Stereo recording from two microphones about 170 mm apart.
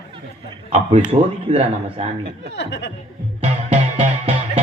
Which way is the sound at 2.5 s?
90° left.